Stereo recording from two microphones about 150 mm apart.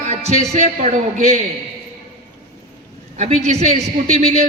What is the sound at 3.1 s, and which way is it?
A man's voice, 45° right (ahead or behind).